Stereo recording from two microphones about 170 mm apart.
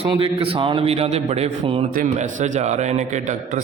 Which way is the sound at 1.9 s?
50° right (ahead or behind).